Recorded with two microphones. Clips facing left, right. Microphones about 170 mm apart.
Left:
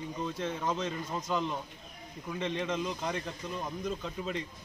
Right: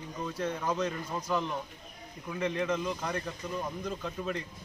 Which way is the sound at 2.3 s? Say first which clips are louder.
Right 2 dB; 20° left (ahead or behind).